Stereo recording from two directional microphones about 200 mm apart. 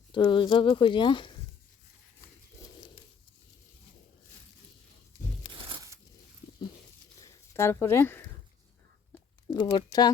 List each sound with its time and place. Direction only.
0.1 s speech: 25° left (ahead or behind)
5.5 s a sound: 25° right (ahead or behind)
7.2 s speech: 15° left (ahead or behind)
9.5 s speech: 20° left (ahead or behind)